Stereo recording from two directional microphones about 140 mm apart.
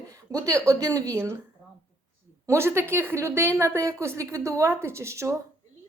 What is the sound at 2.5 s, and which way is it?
A woman's voice, 20° right (ahead or behind).